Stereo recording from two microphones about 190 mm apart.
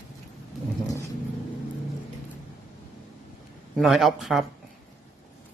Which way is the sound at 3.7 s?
Centre (ahead or behind).